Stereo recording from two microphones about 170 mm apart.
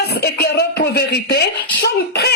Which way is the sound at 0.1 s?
70° left (ahead or behind).